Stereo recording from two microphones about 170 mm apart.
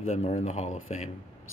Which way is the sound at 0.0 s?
40° left (ahead or behind).